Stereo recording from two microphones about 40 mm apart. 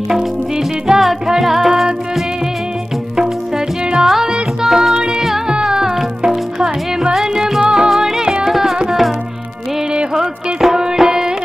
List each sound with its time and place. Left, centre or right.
0.8 s music: centre
4.0 s music: centre
5.5 s music: centre
8.5 s music: centre
10.1 s music: centre